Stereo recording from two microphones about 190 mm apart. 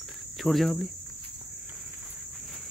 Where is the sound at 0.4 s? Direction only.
Centre (ahead or behind).